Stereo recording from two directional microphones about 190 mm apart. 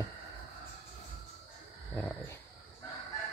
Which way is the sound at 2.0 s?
10° left (ahead or behind).